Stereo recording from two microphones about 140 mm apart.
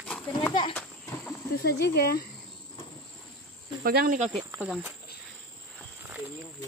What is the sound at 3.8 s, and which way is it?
Speech, 90° right.